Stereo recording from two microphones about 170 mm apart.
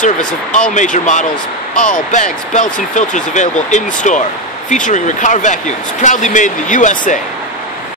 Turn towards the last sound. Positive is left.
turn(degrees=50)  # may be behind; listen again after turning